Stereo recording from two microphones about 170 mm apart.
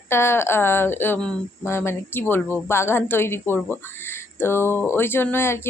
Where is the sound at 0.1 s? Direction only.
15° left (ahead or behind).